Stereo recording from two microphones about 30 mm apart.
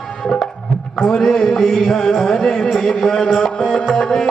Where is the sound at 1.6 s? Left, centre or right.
Centre.